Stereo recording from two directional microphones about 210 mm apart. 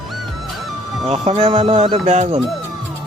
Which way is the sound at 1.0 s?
30° right (ahead or behind).